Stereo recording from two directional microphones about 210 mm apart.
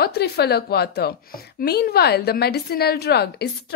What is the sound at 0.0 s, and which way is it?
A woman's voice, 50° left (ahead or behind).